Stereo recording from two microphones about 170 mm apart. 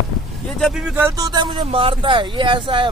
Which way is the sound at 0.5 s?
Centre (ahead or behind).